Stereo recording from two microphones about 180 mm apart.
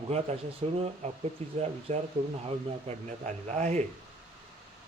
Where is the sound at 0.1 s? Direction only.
35° right (ahead or behind).